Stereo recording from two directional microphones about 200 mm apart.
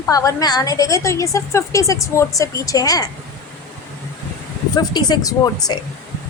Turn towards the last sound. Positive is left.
turn(degrees=20)  # may be behind; listen again after turning